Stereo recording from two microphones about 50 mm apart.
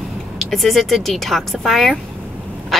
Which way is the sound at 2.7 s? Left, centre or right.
Centre.